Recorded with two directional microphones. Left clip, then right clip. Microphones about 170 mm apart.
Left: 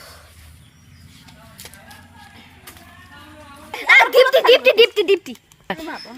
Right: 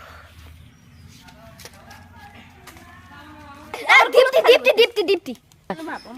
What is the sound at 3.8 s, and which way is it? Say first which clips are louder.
A woman's voice: left 2 dB; 85° right.